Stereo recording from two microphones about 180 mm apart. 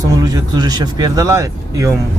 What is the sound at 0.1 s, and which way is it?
Speech, 20° right (ahead or behind).